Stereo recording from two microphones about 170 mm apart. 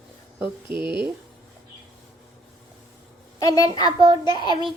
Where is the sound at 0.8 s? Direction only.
30° left (ahead or behind).